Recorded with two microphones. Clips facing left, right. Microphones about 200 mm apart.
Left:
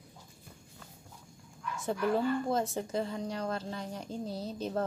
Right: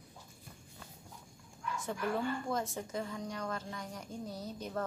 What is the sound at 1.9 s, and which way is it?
Speech, 30° left (ahead or behind).